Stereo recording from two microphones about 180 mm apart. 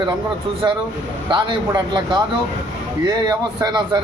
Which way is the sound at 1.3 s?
25° right (ahead or behind).